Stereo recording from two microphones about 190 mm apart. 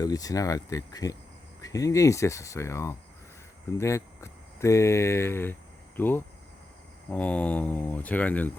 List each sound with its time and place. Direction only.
0.0 s speech: 20° left (ahead or behind)